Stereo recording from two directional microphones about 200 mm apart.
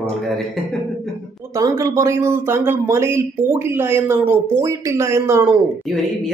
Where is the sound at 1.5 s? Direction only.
15° right (ahead or behind).